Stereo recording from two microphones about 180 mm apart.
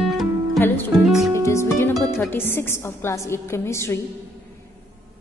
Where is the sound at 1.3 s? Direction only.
15° left (ahead or behind).